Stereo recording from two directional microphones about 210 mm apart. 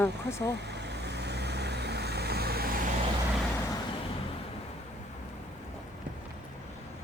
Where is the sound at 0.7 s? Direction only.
55° right (ahead or behind).